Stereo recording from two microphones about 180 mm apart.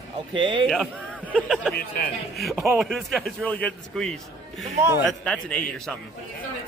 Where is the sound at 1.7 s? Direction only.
55° left (ahead or behind).